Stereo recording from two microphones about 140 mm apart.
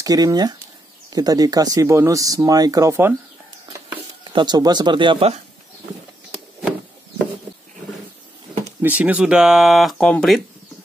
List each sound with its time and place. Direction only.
0.0 s speech: 25° right (ahead or behind)
3.9 s stir: 35° right (ahead or behind)
8.8 s speech: 10° right (ahead or behind)